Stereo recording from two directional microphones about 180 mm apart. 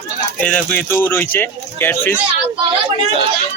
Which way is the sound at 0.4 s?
10° left (ahead or behind).